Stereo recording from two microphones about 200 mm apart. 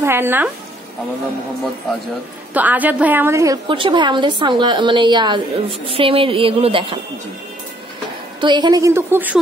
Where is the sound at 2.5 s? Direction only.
10° right (ahead or behind); by 7.0 s 25° right (ahead or behind).